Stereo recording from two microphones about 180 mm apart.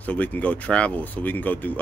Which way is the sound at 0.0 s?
10° left (ahead or behind).